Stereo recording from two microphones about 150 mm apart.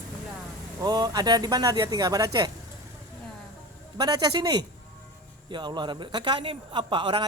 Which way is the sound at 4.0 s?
25° right (ahead or behind).